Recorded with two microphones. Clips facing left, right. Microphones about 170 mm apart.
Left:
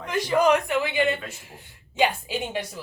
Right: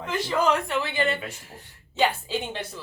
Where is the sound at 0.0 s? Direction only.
15° left (ahead or behind).